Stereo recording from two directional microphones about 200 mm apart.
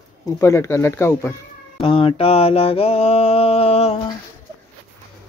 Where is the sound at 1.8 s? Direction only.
25° left (ahead or behind).